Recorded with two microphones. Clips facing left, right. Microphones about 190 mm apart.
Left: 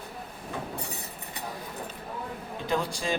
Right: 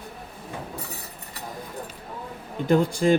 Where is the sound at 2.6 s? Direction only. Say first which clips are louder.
Right 10 dB; 55° right (ahead or behind).